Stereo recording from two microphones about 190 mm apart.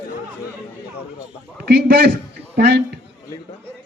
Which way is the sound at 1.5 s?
55° right (ahead or behind).